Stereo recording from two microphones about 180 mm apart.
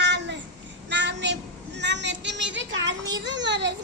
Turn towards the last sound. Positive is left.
turn(degrees=-75)  # may be behind; listen again after turning